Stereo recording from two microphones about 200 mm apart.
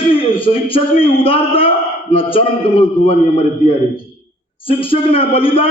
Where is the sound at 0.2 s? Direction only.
25° left (ahead or behind).